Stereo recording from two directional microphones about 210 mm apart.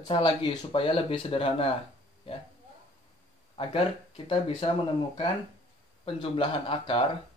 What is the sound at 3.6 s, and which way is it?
Speech, 25° left (ahead or behind).